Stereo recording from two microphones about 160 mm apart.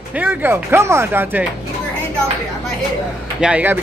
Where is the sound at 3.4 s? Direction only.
10° right (ahead or behind).